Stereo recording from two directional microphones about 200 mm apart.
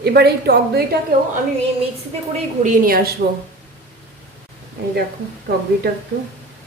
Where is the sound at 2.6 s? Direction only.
45° right (ahead or behind).